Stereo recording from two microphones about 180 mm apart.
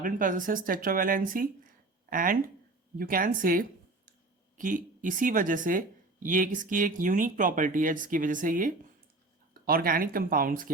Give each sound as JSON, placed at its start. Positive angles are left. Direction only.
{"t": 0.0, "sound": "speech", "side_deg": -50}